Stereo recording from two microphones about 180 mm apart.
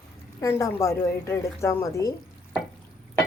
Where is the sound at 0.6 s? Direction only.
15° left (ahead or behind).